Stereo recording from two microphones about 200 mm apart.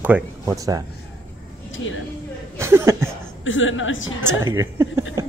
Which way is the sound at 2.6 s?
15° right (ahead or behind).